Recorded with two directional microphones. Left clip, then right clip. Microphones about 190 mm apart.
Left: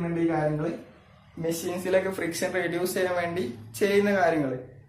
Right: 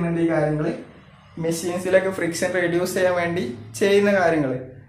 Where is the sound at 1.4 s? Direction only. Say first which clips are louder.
Right 5 dB; 15° left (ahead or behind).